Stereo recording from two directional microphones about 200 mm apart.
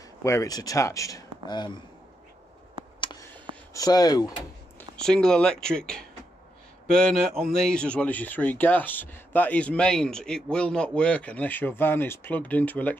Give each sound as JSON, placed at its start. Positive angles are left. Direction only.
{"t": 0.2, "sound": "speech", "side_deg": 15}
{"t": 3.0, "sound": "a sound", "side_deg": 20}
{"t": 3.7, "sound": "speech", "side_deg": 20}
{"t": 4.7, "sound": "speech", "side_deg": 5}